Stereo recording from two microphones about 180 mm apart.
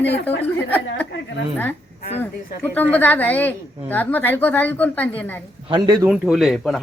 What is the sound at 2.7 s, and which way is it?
A woman's voice, 10° left (ahead or behind).